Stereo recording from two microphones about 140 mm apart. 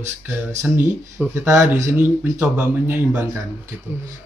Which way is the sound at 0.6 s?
10° right (ahead or behind).